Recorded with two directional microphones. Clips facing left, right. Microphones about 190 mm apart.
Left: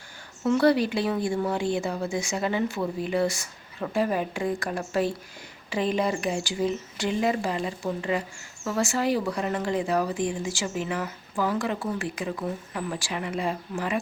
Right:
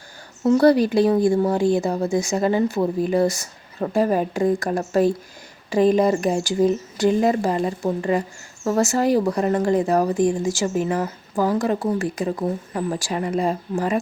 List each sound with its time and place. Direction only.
0.4 s speech: 40° right (ahead or behind)